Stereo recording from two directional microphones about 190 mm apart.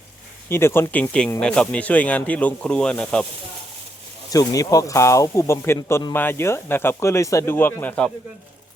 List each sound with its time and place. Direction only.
0.4 s speech: 10° left (ahead or behind)
4.3 s speech: 20° left (ahead or behind)